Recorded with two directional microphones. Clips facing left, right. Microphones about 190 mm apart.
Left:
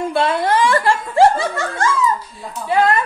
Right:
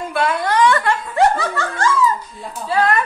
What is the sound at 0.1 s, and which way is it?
Snicker, 25° left (ahead or behind).